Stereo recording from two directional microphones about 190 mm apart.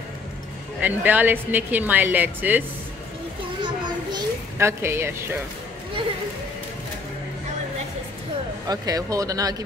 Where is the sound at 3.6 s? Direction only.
25° right (ahead or behind).